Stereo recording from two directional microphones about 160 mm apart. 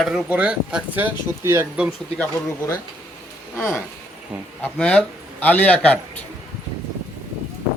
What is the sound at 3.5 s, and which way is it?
A man's voice, 15° left (ahead or behind).